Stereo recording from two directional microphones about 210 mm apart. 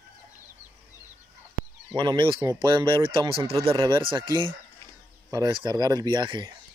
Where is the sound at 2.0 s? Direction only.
20° right (ahead or behind).